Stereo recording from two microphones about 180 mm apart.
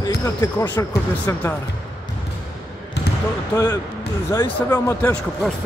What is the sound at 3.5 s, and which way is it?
Speech, 15° left (ahead or behind).